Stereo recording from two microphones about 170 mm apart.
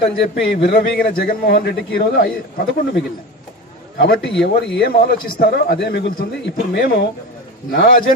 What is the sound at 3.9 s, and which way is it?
A man's voice, 65° left (ahead or behind).